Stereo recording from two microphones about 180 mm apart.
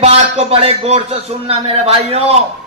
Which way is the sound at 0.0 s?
35° right (ahead or behind).